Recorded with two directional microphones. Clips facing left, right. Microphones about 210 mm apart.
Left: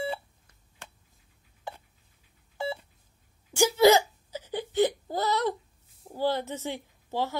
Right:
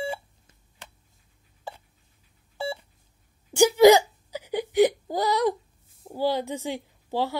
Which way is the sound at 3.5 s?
15° right (ahead or behind).